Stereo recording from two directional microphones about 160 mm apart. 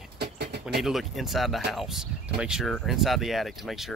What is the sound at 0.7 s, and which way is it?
Speech, centre (ahead or behind).